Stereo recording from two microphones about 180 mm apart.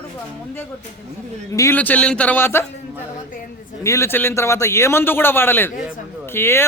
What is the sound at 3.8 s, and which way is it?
A man's voice, 15° left (ahead or behind).